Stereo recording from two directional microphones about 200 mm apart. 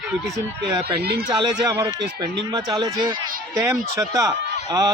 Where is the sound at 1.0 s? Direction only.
50° right (ahead or behind).